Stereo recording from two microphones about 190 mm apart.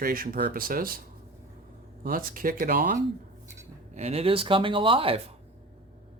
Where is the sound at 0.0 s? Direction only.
50° right (ahead or behind).